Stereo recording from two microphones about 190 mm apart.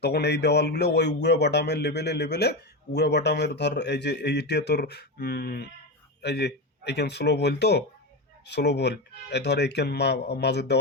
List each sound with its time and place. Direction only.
0.0 s a man's voice: 60° left (ahead or behind)